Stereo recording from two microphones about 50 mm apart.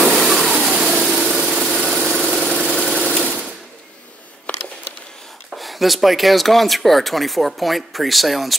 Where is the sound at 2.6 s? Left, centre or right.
Centre.